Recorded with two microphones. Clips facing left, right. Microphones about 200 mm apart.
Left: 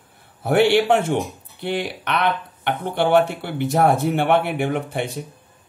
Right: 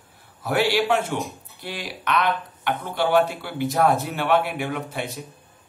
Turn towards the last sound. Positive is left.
turn(degrees=55)  # may be behind; listen again after turning